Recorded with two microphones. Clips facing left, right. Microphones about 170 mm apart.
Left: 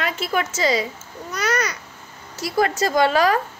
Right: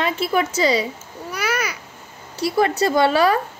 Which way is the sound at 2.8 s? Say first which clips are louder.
Right 1 dB; 30° right (ahead or behind).